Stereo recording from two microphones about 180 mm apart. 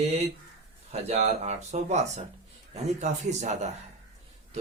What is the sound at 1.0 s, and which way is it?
Speech, 35° right (ahead or behind).